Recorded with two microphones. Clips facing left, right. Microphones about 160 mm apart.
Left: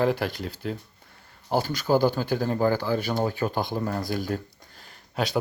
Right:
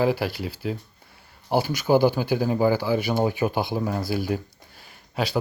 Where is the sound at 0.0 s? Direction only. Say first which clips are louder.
Right 1 dB; 5° right (ahead or behind).